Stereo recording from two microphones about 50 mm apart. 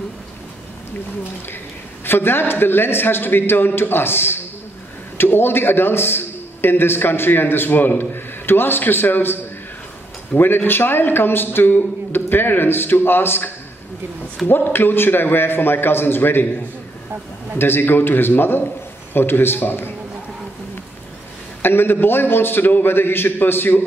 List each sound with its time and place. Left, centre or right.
2.0 s a man's voice: left
14.5 s a man's voice: left
17.6 s a man's voice: left
21.6 s a man's voice: left